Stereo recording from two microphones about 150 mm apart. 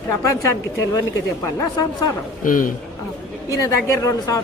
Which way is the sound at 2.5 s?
65° left (ahead or behind).